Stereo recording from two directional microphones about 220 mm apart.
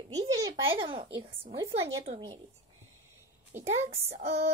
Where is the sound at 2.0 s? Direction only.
25° right (ahead or behind).